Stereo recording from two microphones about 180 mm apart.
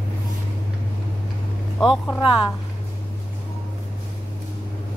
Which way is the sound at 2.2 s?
30° left (ahead or behind).